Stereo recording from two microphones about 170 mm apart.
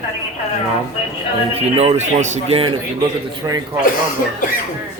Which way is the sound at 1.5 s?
35° right (ahead or behind).